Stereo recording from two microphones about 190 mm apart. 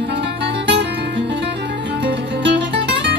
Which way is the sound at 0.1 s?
65° right (ahead or behind).